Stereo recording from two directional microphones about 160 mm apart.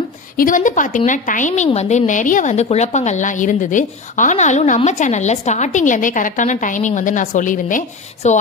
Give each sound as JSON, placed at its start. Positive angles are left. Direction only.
{"t": 0.4, "sound": "a woman's voice", "side_deg": 55}